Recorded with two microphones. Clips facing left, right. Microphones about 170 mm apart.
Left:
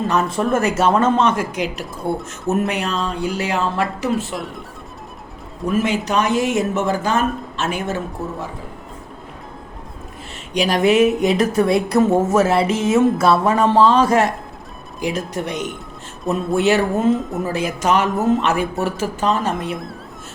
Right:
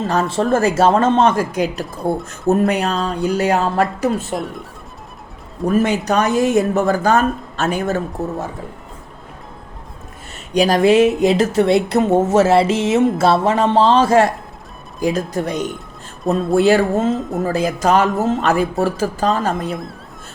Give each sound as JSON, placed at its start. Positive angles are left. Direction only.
{"t": 0.3, "sound": "a woman's voice", "side_deg": -30}
{"t": 5.6, "sound": "speech", "side_deg": -40}
{"t": 10.6, "sound": "a woman's voice", "side_deg": -35}
{"t": 17.1, "sound": "speech", "side_deg": 0}
{"t": 17.4, "sound": "speech", "side_deg": -35}